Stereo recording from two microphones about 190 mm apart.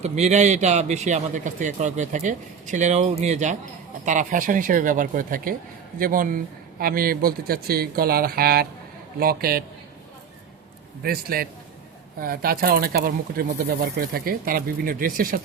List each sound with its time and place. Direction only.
0.0 s a man's voice: 35° right (ahead or behind); by 9.6 s 50° right (ahead or behind)
11.0 s speech: 50° right (ahead or behind)